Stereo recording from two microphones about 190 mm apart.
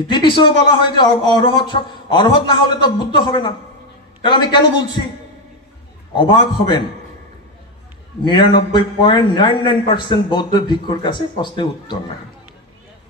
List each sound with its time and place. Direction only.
0.0 s a man's voice: 25° left (ahead or behind)
6.1 s a man's voice: 25° left (ahead or behind)
8.3 s a man's voice: 25° left (ahead or behind)